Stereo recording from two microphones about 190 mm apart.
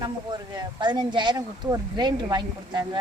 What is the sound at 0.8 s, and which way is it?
Speech, 25° right (ahead or behind).